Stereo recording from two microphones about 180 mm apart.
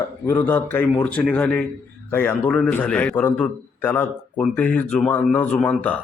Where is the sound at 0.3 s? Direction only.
10° left (ahead or behind).